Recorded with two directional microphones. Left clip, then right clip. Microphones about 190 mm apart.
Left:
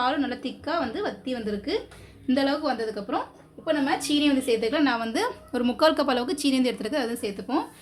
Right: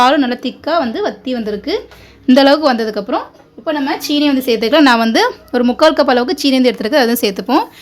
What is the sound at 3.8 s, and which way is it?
A woman's voice, 40° right (ahead or behind).